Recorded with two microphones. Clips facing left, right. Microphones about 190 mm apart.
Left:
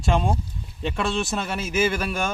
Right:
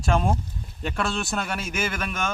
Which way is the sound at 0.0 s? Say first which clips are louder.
Even; centre (ahead or behind).